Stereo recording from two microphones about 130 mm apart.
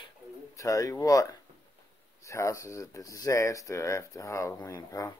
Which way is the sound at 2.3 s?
25° left (ahead or behind).